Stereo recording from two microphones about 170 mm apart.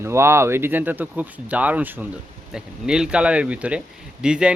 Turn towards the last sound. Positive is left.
turn(degrees=-5)  # may be behind; listen again after turning